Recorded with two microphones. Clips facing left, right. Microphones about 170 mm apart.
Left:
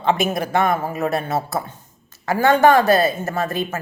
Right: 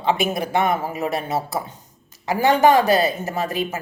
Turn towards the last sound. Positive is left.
turn(degrees=-10)  # may be behind; listen again after turning